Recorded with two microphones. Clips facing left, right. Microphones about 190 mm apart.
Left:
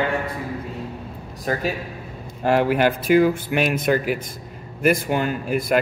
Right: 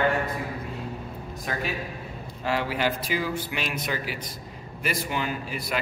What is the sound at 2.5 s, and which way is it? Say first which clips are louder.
A man's voice: left 8 dB; 50° left (ahead or behind).